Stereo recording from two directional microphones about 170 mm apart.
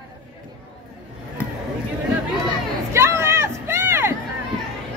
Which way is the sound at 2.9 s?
15° right (ahead or behind).